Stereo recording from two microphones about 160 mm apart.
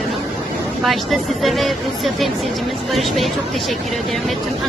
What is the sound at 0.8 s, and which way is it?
Speech, centre (ahead or behind).